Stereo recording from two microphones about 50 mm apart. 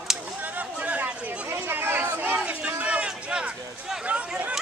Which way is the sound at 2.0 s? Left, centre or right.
Right.